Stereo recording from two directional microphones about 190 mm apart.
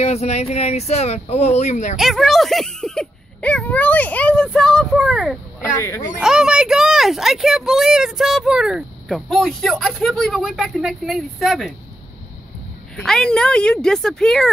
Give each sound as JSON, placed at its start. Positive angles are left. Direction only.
{"t": 0.0, "sound": "speech", "side_deg": 35}
{"t": 2.0, "sound": "speech", "side_deg": 0}
{"t": 5.6, "sound": "speech", "side_deg": 15}
{"t": 6.2, "sound": "speech", "side_deg": -5}
{"t": 12.9, "sound": "speech", "side_deg": 5}